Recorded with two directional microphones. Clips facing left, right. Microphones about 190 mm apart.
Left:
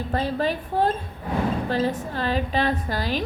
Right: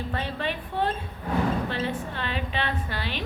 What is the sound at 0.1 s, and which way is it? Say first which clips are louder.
A woman's voice: left 9 dB; 40° left (ahead or behind).